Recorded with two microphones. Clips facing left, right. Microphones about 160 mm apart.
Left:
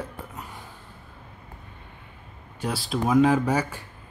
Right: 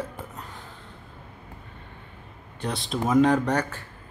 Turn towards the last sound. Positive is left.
turn(degrees=5)  # may be behind; listen again after turning